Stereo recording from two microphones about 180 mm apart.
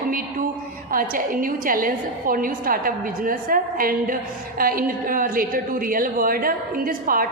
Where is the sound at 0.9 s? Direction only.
50° right (ahead or behind).